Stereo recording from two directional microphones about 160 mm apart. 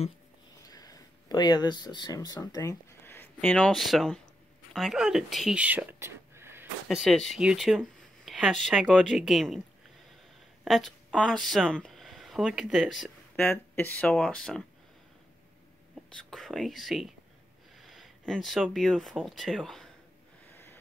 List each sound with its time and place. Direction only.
0.7 s speech: 25° left (ahead or behind); by 6.7 s 15° right (ahead or behind)
6.9 s speech: centre (ahead or behind)
10.6 s speech: centre (ahead or behind)
13.4 s speech: 10° left (ahead or behind)
15.9 s speech: centre (ahead or behind)
20.5 s vehicle: 15° left (ahead or behind)